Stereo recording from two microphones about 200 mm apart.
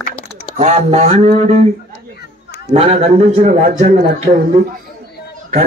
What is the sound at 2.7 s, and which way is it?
A man's voice, 30° right (ahead or behind).